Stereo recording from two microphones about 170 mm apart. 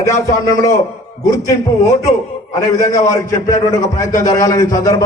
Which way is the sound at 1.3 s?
20° left (ahead or behind).